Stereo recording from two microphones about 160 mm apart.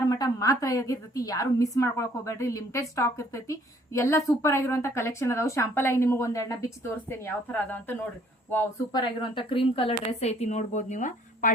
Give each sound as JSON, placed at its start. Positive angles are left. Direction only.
{"t": 0.0, "sound": "a woman's voice", "side_deg": 25}
{"t": 8.9, "sound": "a woman's voice", "side_deg": 30}